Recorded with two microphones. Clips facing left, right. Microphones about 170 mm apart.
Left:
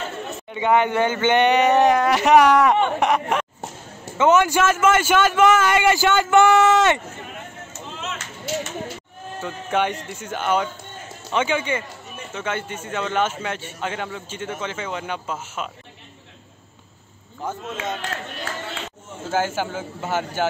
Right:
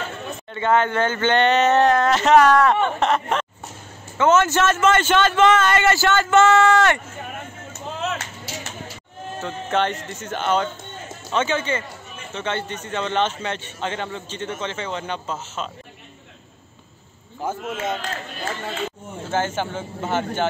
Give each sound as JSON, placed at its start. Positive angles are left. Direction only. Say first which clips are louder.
{"t": 0.5, "sound": "a man's voice", "louder": "left 1 dB", "side_deg": 15}
{"t": 7.7, "sound": "a sound", "louder": "right 6 dB", "side_deg": -60}
{"t": 9.4, "sound": "a man's voice", "louder": "even", "side_deg": 10}
{"t": 17.4, "sound": "speech", "louder": "right 3 dB", "side_deg": -10}
{"t": 19.3, "sound": "a man's voice", "louder": "left 1 dB", "side_deg": 5}